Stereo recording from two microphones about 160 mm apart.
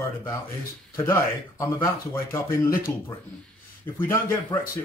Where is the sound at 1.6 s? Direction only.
15° left (ahead or behind).